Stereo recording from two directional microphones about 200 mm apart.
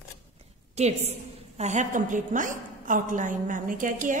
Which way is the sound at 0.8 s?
35° right (ahead or behind).